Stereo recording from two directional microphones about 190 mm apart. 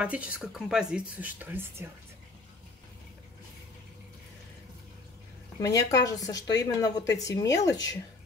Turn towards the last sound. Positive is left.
turn(degrees=20)  # may be behind; listen again after turning